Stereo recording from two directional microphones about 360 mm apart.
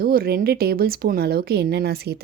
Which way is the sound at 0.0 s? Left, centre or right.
Right.